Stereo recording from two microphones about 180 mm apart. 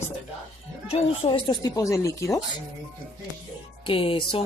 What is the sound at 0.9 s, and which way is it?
Speech, 30° left (ahead or behind).